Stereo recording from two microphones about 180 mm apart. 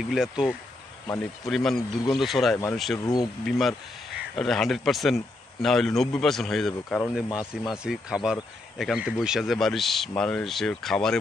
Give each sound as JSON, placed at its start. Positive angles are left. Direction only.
{"t": 0.0, "sound": "speech", "side_deg": 0}
{"t": 1.0, "sound": "speech", "side_deg": 15}
{"t": 1.4, "sound": "speech", "side_deg": 0}
{"t": 7.2, "sound": "speech", "side_deg": 20}
{"t": 7.7, "sound": "speech", "side_deg": -5}